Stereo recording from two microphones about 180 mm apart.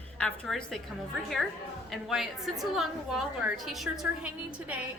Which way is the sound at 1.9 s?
Centre (ahead or behind).